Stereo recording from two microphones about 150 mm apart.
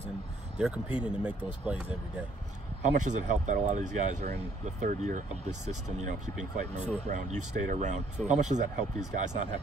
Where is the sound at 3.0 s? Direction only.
55° right (ahead or behind).